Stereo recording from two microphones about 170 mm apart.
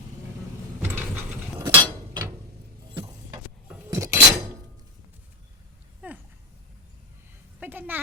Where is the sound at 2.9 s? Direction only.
15° right (ahead or behind).